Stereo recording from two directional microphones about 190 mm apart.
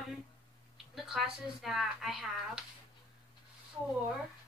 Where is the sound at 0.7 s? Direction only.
Centre (ahead or behind).